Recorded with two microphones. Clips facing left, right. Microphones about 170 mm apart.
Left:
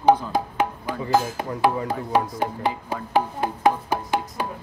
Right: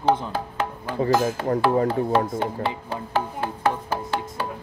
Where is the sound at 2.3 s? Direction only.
15° left (ahead or behind).